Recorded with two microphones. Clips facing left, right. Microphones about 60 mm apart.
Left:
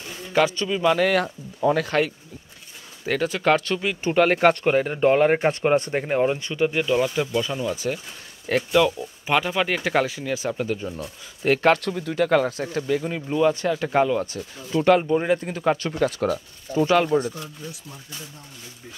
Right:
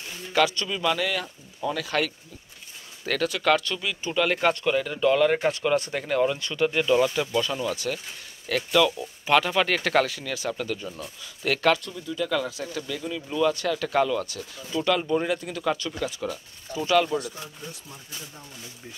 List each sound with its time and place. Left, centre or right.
0.3 s speech: left
0.9 s speech: left
3.1 s speech: left
10.1 s speech: left
11.8 s speech: left
15.9 s speech: left
16.7 s speech: left